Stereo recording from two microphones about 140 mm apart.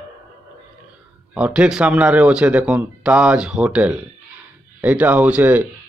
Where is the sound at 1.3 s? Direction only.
10° right (ahead or behind).